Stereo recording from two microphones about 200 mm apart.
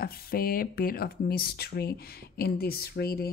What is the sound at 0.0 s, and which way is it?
Speech, 50° left (ahead or behind).